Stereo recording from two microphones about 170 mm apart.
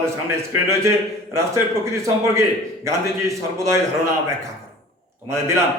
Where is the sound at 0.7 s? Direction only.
15° right (ahead or behind).